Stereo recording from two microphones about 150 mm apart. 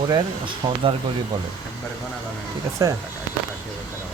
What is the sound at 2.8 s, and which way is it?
Speech, 25° right (ahead or behind).